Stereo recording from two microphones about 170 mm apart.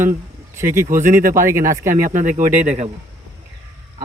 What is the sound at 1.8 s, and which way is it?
Speech, 45° right (ahead or behind).